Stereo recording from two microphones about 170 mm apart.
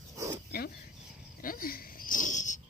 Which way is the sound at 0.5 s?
65° left (ahead or behind).